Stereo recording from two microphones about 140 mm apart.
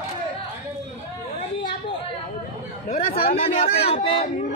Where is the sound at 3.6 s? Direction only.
45° left (ahead or behind).